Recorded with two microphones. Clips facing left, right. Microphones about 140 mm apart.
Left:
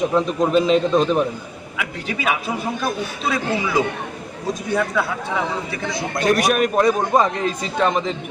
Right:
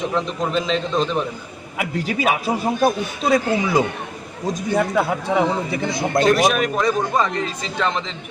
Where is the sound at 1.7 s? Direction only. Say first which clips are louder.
Right 4 dB; 40° right (ahead or behind).